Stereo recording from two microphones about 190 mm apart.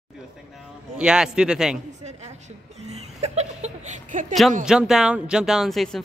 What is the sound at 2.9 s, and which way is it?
Speech, 35° right (ahead or behind).